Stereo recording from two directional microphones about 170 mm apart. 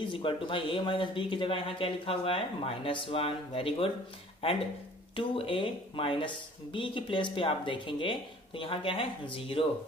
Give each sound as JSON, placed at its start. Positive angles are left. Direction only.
{"t": 0.0, "sound": "speech", "side_deg": 30}